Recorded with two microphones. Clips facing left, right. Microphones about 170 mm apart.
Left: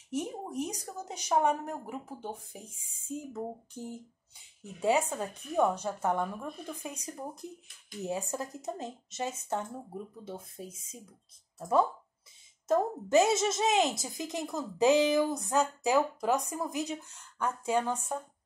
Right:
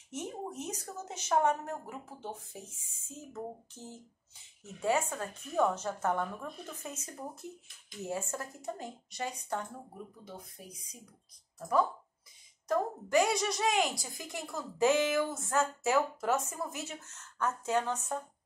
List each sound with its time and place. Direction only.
0.1 s a woman's voice: 10° left (ahead or behind)
12.6 s a woman's voice: 25° left (ahead or behind)